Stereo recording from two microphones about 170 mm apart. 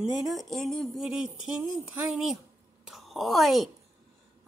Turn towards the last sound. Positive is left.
turn(degrees=0)  # may be behind; listen again after turning